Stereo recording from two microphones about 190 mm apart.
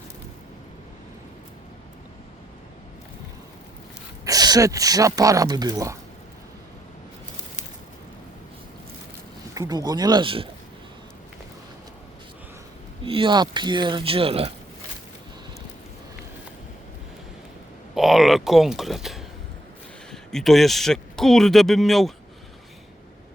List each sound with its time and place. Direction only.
4.3 s speech: 20° right (ahead or behind)
9.6 s speech: 20° right (ahead or behind)
13.1 s speech: 25° right (ahead or behind)
17.9 s speech: centre (ahead or behind)